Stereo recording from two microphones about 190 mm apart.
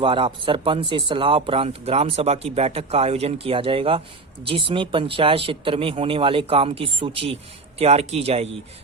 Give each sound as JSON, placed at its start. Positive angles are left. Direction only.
{"t": 0.0, "sound": "speech", "side_deg": -25}